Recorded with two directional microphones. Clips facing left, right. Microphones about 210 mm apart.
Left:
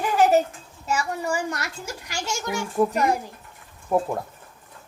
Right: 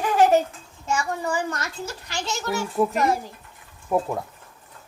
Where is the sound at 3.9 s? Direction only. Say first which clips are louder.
Left 1 dB; centre (ahead or behind).